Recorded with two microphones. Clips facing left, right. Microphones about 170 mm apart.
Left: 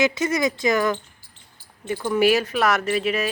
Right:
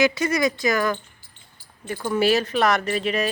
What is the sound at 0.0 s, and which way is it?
Speech, 20° left (ahead or behind).